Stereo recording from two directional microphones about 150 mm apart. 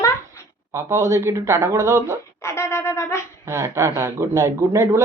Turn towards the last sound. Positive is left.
turn(degrees=-20)  # may be behind; listen again after turning